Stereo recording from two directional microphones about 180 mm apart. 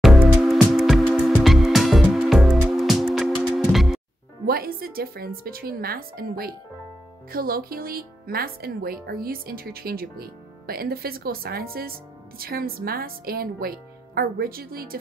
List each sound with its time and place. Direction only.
0.0 s music: centre (ahead or behind)
4.5 s speech: 55° right (ahead or behind)